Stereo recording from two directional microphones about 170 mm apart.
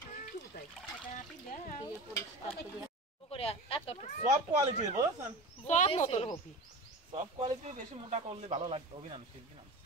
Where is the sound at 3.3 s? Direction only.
35° left (ahead or behind).